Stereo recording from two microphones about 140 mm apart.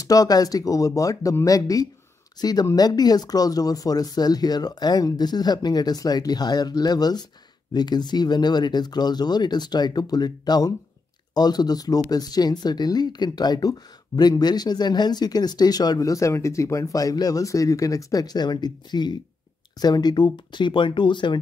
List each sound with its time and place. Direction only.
0.0 s speech: 25° left (ahead or behind)